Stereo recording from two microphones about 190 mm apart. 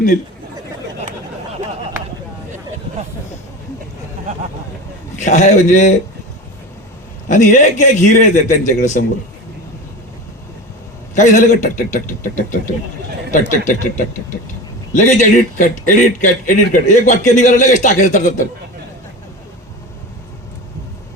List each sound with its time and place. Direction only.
5.1 s speech: 40° left (ahead or behind)
7.3 s speech: 40° left (ahead or behind)
11.1 s speech: 40° left (ahead or behind)